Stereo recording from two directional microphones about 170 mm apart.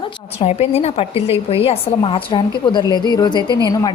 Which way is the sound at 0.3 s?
35° left (ahead or behind).